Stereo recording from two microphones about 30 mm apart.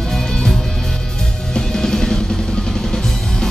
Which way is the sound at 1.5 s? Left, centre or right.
Centre.